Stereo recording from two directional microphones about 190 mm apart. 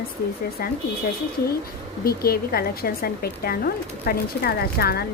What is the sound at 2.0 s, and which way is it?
A woman's voice, 55° left (ahead or behind).